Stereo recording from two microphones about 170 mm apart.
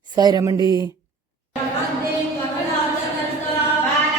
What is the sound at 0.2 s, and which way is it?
Speech, 25° right (ahead or behind).